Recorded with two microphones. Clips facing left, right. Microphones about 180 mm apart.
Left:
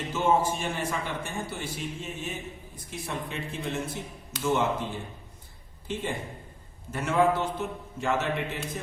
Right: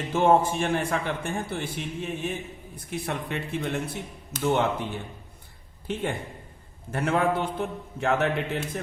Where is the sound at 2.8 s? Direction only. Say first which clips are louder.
Right 4 dB; 65° right (ahead or behind).